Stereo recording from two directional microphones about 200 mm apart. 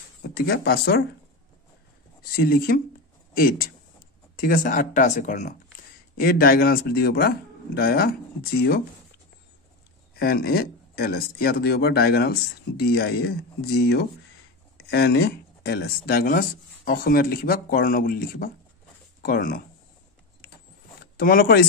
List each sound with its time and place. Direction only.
0.3 s speech: 50° left (ahead or behind)
2.3 s speech: 50° left (ahead or behind)
6.1 s speech: 50° left (ahead or behind)
10.1 s speech: 50° left (ahead or behind)
21.0 s speech: 45° left (ahead or behind)